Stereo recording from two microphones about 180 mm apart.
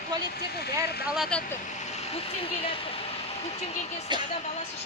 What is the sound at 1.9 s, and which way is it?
Speech, 35° left (ahead or behind).